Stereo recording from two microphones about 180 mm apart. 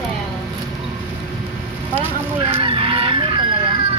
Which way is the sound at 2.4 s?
30° right (ahead or behind).